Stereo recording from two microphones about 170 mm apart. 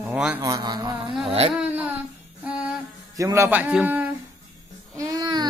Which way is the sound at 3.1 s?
20° right (ahead or behind).